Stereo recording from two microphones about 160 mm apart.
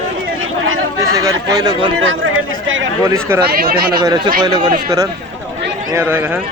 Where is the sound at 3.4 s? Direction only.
70° right (ahead or behind).